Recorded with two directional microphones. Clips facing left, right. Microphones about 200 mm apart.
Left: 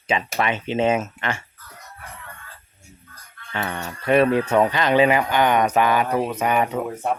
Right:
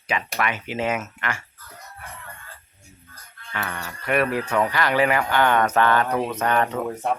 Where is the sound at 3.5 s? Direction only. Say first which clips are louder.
Left 3 dB; 30° left (ahead or behind).